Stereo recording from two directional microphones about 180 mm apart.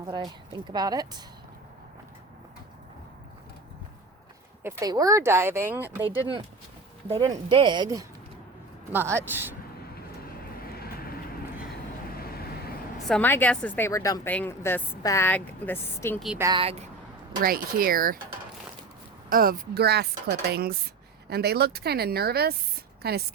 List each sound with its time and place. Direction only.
0.5 s speech: 20° right (ahead or behind)
4.6 s speech: 20° right (ahead or behind)
7.2 s speech: 25° right (ahead or behind)
10.6 s vehicle: 55° left (ahead or behind)
13.1 s a woman's voice: 10° left (ahead or behind)
16.4 s speech: 25° right (ahead or behind)
16.6 s speech: 35° right (ahead or behind)
17.4 s speech: 55° right (ahead or behind)
19.3 s speech: 55° right (ahead or behind)